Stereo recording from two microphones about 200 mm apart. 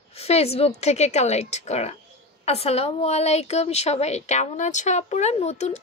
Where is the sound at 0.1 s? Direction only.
30° left (ahead or behind).